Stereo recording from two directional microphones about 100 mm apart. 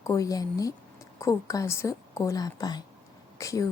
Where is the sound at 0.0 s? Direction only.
35° left (ahead or behind).